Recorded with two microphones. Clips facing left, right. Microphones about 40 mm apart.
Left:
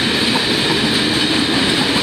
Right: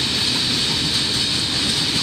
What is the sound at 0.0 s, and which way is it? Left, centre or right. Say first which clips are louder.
Train: left 6 dB; left.